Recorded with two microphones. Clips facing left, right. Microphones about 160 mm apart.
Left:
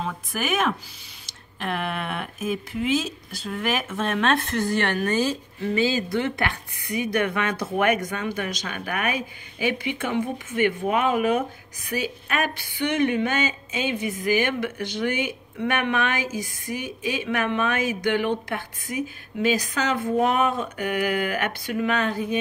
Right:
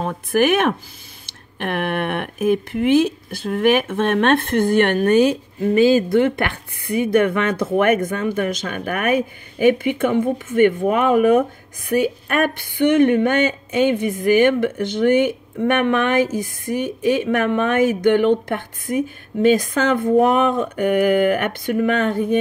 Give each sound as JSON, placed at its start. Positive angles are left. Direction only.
{"t": 0.0, "sound": "a woman's voice", "side_deg": -55}